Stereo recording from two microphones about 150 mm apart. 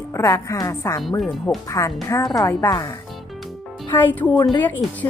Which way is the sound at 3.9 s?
10° left (ahead or behind).